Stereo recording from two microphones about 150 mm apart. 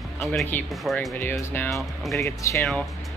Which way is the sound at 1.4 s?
15° left (ahead or behind).